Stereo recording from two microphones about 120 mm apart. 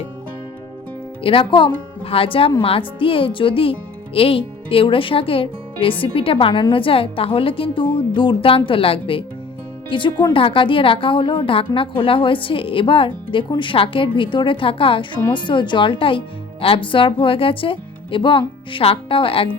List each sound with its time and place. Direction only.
1.2 s a woman's voice: 45° left (ahead or behind)